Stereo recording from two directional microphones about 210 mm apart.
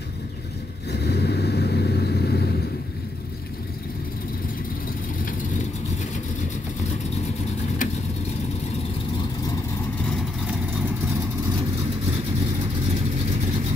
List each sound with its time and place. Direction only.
0.9 s vehicle: 50° left (ahead or behind)